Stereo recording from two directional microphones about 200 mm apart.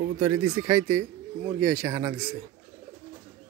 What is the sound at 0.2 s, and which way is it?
Speech, 10° right (ahead or behind).